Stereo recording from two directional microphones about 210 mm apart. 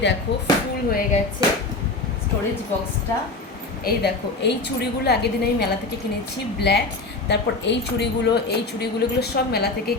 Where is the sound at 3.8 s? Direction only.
50° left (ahead or behind).